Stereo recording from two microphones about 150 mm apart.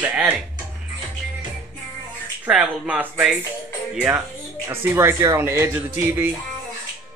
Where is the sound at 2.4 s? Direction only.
10° right (ahead or behind).